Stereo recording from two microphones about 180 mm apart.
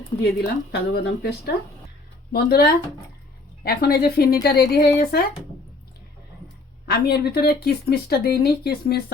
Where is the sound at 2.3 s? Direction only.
60° left (ahead or behind).